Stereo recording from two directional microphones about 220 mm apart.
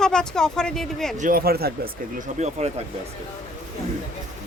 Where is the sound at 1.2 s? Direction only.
40° right (ahead or behind).